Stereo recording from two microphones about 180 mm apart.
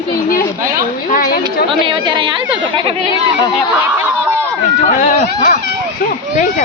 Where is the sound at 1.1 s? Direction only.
55° left (ahead or behind).